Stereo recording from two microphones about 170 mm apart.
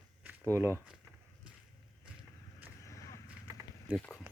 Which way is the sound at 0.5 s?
15° right (ahead or behind).